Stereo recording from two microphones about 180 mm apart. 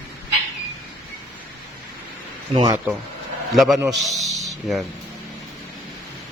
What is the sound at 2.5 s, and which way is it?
Speech, 20° right (ahead or behind).